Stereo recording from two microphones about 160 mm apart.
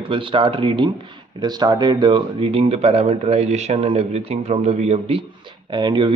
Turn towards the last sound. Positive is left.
turn(degrees=-30)  # may be behind; listen again after turning